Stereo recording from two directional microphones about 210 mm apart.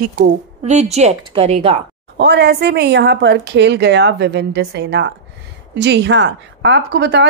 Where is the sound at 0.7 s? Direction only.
30° right (ahead or behind).